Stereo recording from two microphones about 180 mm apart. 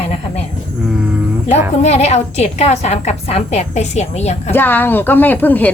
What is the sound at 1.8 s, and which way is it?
A woman's voice, 35° left (ahead or behind).